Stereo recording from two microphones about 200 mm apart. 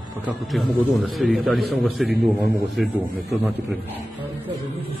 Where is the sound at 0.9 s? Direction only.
Centre (ahead or behind).